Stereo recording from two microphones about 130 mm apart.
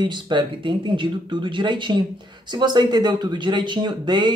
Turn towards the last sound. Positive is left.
turn(degrees=-35)  # may be behind; listen again after turning